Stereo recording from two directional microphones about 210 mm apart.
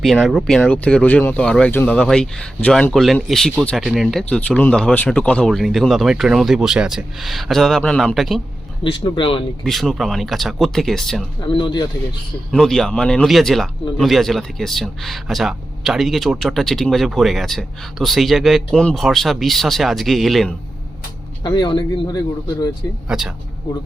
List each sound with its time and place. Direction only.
0.0 s speech: centre (ahead or behind)
8.8 s speech: 25° left (ahead or behind)
9.6 s speech: centre (ahead or behind)
11.3 s speech: 25° left (ahead or behind)
12.5 s speech: centre (ahead or behind)
21.4 s speech: 20° left (ahead or behind)
23.0 s speech: 5° right (ahead or behind)